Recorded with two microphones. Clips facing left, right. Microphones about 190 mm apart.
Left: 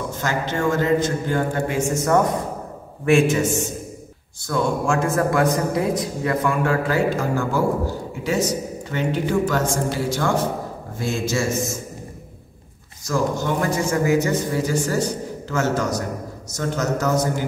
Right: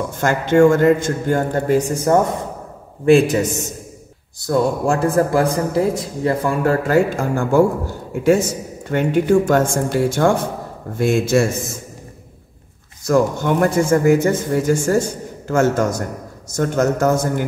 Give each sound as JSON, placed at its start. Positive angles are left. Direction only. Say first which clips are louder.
{"t": 0.2, "sound": "a man's voice", "louder": "right 11 dB", "side_deg": -50}
{"t": 13.0, "sound": "speech", "louder": "right 6 dB", "side_deg": -60}